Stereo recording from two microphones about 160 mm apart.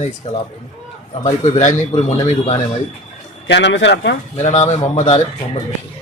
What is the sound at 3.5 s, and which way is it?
Speech, 90° left.